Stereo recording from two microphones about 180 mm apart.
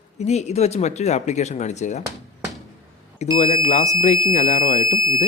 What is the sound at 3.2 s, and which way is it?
Speech, 40° left (ahead or behind).